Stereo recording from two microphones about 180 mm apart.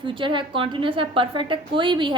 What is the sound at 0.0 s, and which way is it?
A woman's voice, 25° right (ahead or behind).